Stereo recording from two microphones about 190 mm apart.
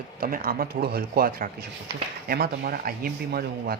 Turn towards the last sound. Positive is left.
turn(degrees=-50)  # may be behind; listen again after turning